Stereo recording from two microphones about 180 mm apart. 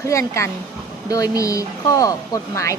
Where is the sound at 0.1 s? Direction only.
15° left (ahead or behind).